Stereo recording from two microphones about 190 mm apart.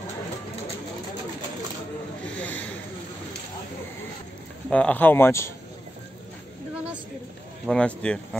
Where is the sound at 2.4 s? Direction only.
5° left (ahead or behind).